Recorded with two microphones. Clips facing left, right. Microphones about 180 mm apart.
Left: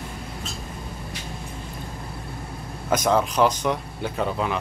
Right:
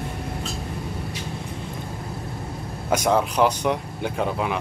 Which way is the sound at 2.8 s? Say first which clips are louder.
Even; 10° right (ahead or behind).